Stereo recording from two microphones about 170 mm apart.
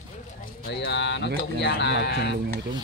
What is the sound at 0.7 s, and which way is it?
Speech, 80° left.